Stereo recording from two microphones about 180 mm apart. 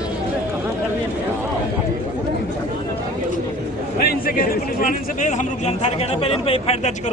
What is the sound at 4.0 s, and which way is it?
A man's voice, 55° left (ahead or behind).